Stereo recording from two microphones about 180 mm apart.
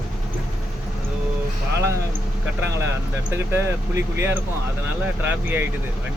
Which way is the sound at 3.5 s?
15° right (ahead or behind).